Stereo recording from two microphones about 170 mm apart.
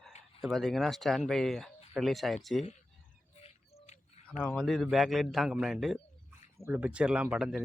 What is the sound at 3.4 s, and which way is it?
Bird, 40° left (ahead or behind).